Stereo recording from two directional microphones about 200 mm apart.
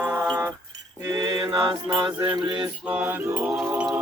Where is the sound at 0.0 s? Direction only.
5° right (ahead or behind).